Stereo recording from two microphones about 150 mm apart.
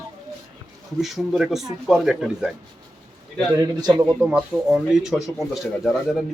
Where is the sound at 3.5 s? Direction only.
25° right (ahead or behind).